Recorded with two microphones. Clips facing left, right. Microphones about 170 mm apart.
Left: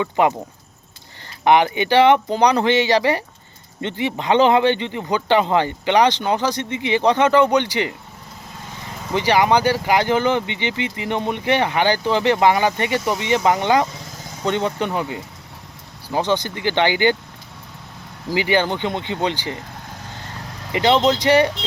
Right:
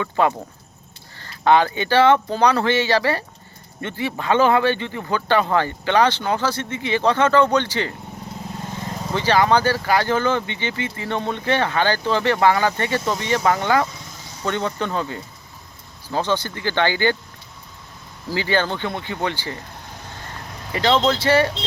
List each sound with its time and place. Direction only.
0.0 s speech: 20° left (ahead or behind)
1.5 s speech: 15° left (ahead or behind)
9.1 s speech: 15° left (ahead or behind)
18.3 s speech: 15° left (ahead or behind)
20.7 s speech: 20° left (ahead or behind)